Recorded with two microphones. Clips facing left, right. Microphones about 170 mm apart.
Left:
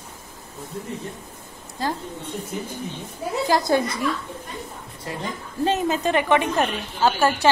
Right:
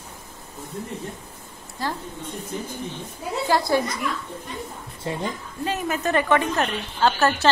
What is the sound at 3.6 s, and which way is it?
Speech, 25° left (ahead or behind).